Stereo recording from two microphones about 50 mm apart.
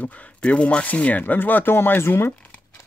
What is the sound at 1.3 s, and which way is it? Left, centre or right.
Speech, left.